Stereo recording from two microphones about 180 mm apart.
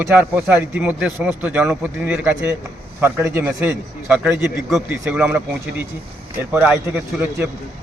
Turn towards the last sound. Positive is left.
turn(degrees=-10)  # may be behind; listen again after turning